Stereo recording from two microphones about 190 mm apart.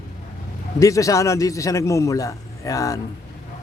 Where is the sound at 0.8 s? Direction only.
15° left (ahead or behind).